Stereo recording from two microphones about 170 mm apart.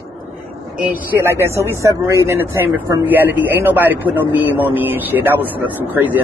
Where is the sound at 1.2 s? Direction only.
15° right (ahead or behind).